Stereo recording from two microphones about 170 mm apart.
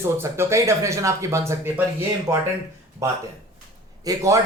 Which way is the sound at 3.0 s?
15° right (ahead or behind).